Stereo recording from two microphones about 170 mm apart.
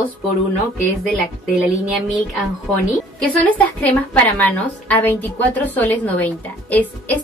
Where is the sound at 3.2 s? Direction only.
10° left (ahead or behind).